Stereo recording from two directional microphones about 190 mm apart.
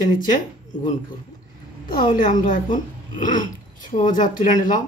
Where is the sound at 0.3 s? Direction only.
40° left (ahead or behind).